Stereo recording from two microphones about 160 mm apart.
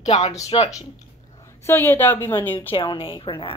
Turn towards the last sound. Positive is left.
turn(degrees=35)  # may be behind; listen again after turning